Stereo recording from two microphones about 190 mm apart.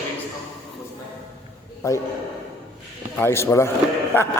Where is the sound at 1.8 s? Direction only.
15° left (ahead or behind).